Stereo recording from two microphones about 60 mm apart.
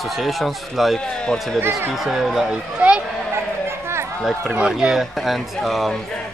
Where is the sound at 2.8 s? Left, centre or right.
Right.